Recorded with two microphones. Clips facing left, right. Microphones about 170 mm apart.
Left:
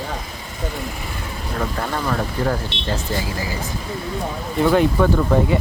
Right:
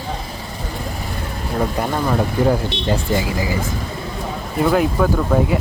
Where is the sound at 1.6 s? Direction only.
15° right (ahead or behind).